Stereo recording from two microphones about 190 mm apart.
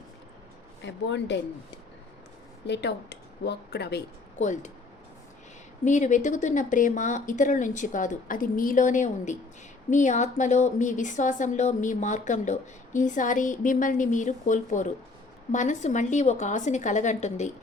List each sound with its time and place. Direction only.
0.8 s speech: 70° left (ahead or behind)
2.6 s speech: 65° left (ahead or behind)
4.4 s a woman's voice: 40° left (ahead or behind)
5.8 s a woman's voice: 40° left (ahead or behind)